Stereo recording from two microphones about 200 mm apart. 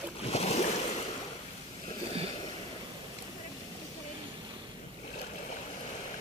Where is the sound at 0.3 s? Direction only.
35° left (ahead or behind).